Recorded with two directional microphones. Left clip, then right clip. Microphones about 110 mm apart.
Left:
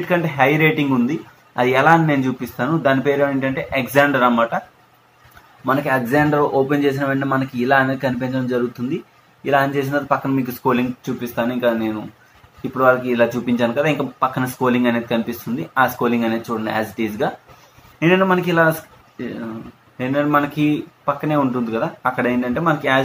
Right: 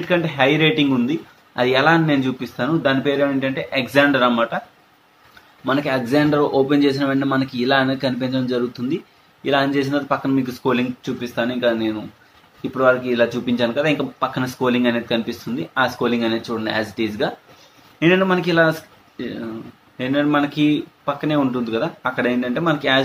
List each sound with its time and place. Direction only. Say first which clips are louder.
0.1 s a man's voice: left 1 dB; 15° right (ahead or behind)
5.7 s speech: left 2 dB; 20° right (ahead or behind)
6.0 s speech: right 1 dB; 30° right (ahead or behind)
8.9 s a sound: right 1 dB; 40° right (ahead or behind)
9.6 s a man's voice: left 1 dB; 20° right (ahead or behind)